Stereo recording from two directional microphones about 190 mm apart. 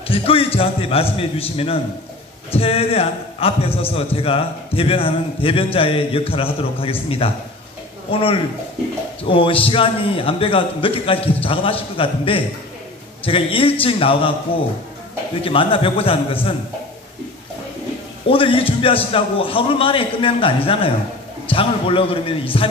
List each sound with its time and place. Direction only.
0.1 s a man's voice: 30° left (ahead or behind)
15.4 s a man's voice: 30° left (ahead or behind)
18.2 s a man's voice: 30° left (ahead or behind)